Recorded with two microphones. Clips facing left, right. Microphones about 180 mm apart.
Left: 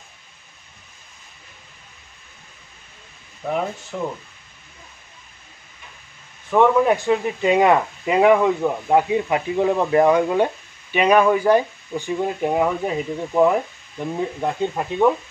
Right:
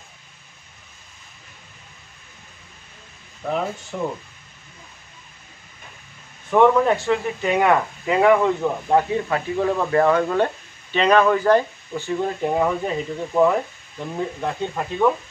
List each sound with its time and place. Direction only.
3.4 s speech: 5° left (ahead or behind)
6.5 s speech: centre (ahead or behind)
6.9 s speech: 20° left (ahead or behind)